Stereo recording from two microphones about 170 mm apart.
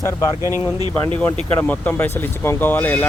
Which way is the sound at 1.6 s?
10° left (ahead or behind).